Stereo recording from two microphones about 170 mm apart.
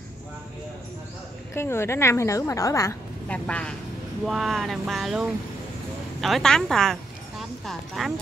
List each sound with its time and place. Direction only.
1.5 s a woman's voice: 15° left (ahead or behind)
3.4 s a woman's voice: 5° left (ahead or behind)